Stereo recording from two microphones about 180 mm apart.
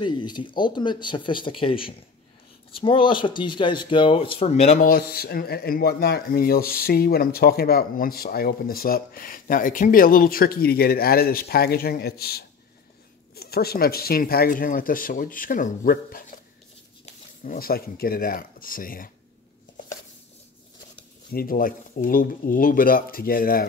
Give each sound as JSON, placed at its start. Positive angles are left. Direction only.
{"t": 0.0, "sound": "speech", "side_deg": 25}
{"t": 21.3, "sound": "speech", "side_deg": 55}